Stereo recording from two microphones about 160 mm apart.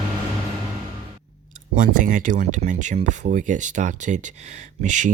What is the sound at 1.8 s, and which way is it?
Speech, 55° right (ahead or behind).